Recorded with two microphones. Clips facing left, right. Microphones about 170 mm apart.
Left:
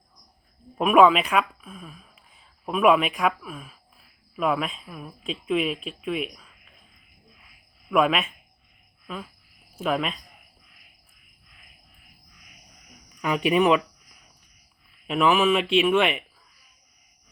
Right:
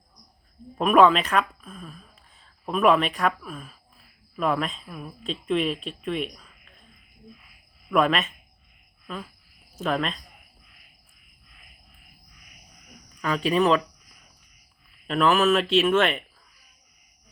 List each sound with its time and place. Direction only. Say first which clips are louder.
0.8 s speech: left 1 dB; 5° left (ahead or behind)
7.9 s speech: even; 5° left (ahead or behind)
9.0 s cricket: even; 5° left (ahead or behind)
9.7 s speech: left 1 dB; 5° left (ahead or behind)
13.2 s speech: left 1 dB; 15° left (ahead or behind)
15.0 s speech: even; 10° left (ahead or behind)